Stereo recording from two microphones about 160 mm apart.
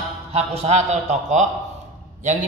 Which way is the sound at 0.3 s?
40° right (ahead or behind).